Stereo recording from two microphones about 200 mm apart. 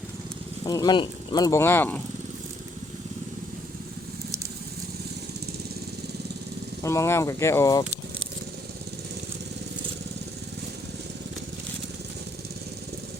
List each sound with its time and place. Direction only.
0.6 s speech: 20° left (ahead or behind)
6.8 s speech: 15° left (ahead or behind)